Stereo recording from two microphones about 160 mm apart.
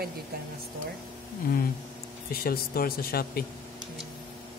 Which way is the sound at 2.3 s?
70° left (ahead or behind).